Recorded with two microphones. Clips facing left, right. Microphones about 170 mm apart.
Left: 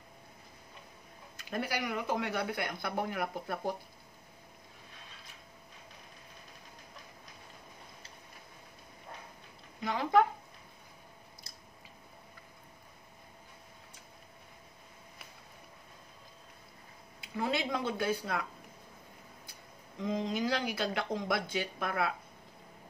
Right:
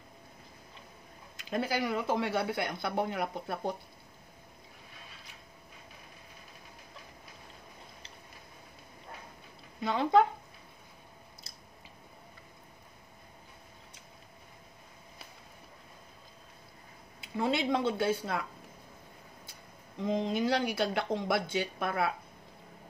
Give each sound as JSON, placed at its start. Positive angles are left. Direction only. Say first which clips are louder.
{"t": 1.5, "sound": "speech", "louder": "right 4 dB", "side_deg": -25}
{"t": 9.8, "sound": "speech", "louder": "right 2 dB", "side_deg": -25}
{"t": 17.2, "sound": "speech", "louder": "right 3 dB", "side_deg": -25}
{"t": 20.1, "sound": "speech", "louder": "right 3 dB", "side_deg": -25}